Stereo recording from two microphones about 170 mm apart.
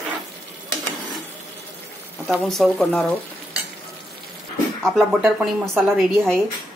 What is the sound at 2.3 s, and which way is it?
Speech, centre (ahead or behind).